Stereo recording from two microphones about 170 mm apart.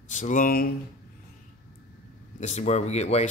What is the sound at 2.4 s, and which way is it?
Speech, 45° left (ahead or behind).